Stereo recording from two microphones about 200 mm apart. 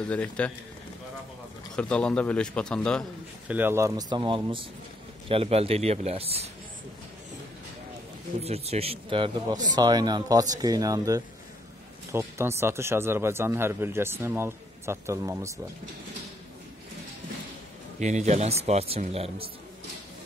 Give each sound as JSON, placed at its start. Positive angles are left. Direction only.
{"t": 0.0, "sound": "speech", "side_deg": 5}
{"t": 1.8, "sound": "a man's voice", "side_deg": 5}
{"t": 3.4, "sound": "speech", "side_deg": -10}
{"t": 8.4, "sound": "speech", "side_deg": -30}
{"t": 18.0, "sound": "speech", "side_deg": -35}